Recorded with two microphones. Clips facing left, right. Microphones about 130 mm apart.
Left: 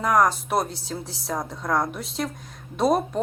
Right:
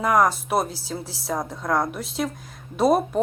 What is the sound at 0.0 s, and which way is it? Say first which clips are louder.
Speech: right 1 dB; 5° right (ahead or behind).